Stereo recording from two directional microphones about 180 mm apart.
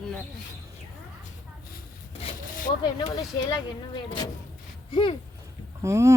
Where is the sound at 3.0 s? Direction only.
30° left (ahead or behind).